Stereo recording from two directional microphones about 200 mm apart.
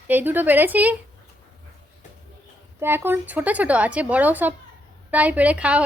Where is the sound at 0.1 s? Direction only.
10° right (ahead or behind).